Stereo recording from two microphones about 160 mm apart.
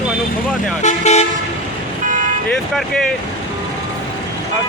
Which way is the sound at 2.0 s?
55° right (ahead or behind).